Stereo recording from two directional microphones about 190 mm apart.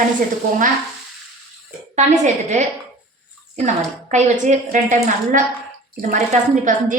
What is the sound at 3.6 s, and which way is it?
Speech, 40° right (ahead or behind).